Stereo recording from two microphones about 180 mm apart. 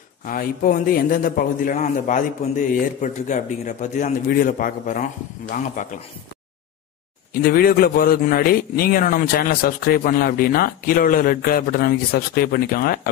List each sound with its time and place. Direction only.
0.2 s a man's voice: 50° left (ahead or behind)
7.4 s a man's voice: 55° left (ahead or behind)